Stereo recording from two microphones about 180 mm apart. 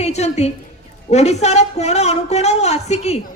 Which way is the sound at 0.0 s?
35° left (ahead or behind).